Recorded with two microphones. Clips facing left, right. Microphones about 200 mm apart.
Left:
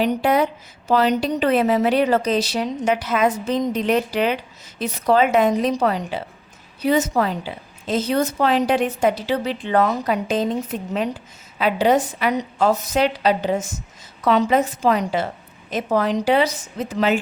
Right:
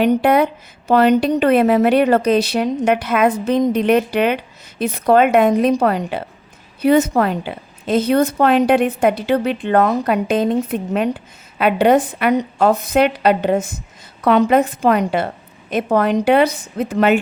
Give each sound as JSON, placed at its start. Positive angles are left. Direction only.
{"t": 0.0, "sound": "a woman's voice", "side_deg": -60}